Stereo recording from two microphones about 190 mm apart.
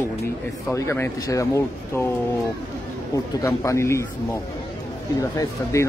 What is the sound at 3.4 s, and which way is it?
Speech, 15° left (ahead or behind).